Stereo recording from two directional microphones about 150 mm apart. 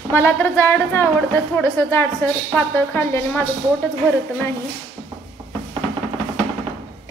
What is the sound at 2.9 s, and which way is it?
Speech, 15° left (ahead or behind).